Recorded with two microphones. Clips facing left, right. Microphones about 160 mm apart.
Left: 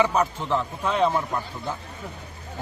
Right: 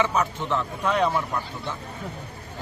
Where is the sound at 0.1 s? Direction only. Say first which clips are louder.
Left 2 dB; 30° left (ahead or behind).